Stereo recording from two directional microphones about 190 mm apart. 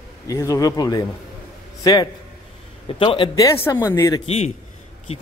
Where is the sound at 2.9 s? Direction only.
30° left (ahead or behind).